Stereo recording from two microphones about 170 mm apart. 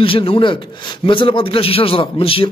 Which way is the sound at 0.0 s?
30° left (ahead or behind).